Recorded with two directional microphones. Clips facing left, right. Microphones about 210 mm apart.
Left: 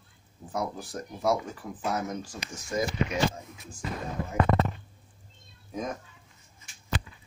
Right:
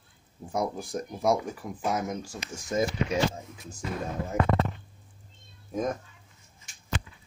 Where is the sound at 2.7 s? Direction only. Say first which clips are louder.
Right 3 dB; 25° right (ahead or behind).